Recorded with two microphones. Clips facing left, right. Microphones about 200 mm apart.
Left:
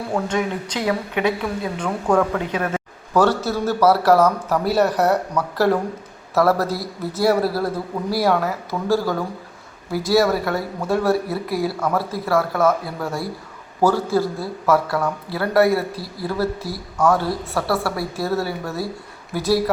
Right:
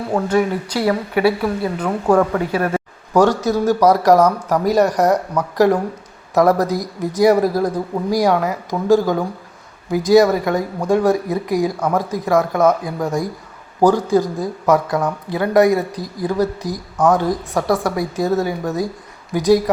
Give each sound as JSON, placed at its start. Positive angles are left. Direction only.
{"t": 0.3, "sound": "speech", "side_deg": -5}